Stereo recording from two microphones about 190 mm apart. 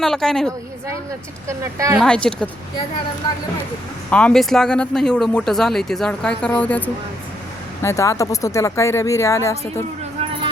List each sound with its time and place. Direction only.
0.0 s speech: centre (ahead or behind)
1.5 s speech: 15° right (ahead or behind)
2.0 s speech: 5° left (ahead or behind)
4.1 s speech: 5° left (ahead or behind)